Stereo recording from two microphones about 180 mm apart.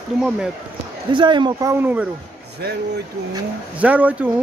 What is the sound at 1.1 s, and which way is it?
Speech, 25° right (ahead or behind).